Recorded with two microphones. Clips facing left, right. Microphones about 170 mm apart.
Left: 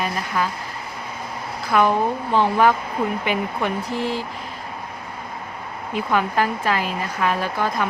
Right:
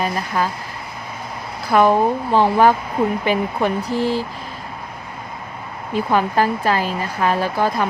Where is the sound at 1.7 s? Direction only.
35° right (ahead or behind).